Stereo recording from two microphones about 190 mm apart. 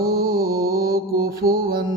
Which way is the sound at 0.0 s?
50° right (ahead or behind).